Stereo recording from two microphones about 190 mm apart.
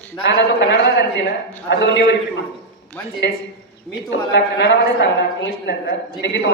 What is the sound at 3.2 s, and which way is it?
A woman's voice, 65° left (ahead or behind).